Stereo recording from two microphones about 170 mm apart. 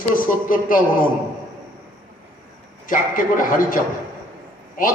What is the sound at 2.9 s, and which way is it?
Speech, 50° left (ahead or behind).